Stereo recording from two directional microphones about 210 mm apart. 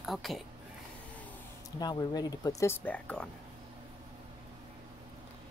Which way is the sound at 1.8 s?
20° left (ahead or behind).